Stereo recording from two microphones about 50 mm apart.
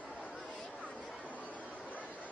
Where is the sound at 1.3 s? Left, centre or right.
Left.